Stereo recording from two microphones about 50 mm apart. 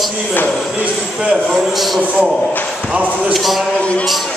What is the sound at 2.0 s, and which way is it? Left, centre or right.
Speech, right.